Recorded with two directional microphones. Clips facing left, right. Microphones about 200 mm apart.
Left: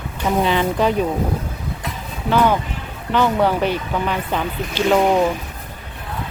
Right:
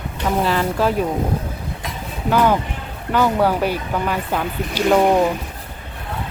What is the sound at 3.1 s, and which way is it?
Speech, 10° right (ahead or behind).